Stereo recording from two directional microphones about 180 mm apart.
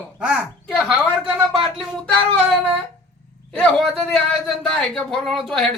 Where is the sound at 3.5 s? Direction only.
5° left (ahead or behind).